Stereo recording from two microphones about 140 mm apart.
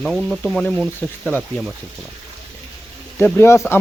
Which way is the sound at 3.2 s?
15° left (ahead or behind).